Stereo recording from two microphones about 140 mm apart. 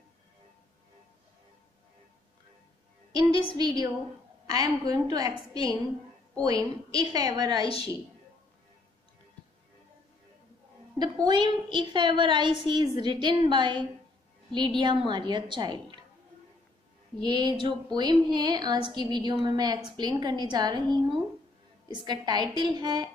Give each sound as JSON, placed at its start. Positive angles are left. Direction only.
{"t": 3.1, "sound": "a woman's voice", "side_deg": -30}
{"t": 5.5, "sound": "a woman's voice", "side_deg": 40}
{"t": 6.4, "sound": "a woman's voice", "side_deg": -25}
{"t": 7.6, "sound": "a woman's voice", "side_deg": 40}
{"t": 11.2, "sound": "a woman's voice", "side_deg": -35}
{"t": 17.2, "sound": "a woman's voice", "side_deg": -30}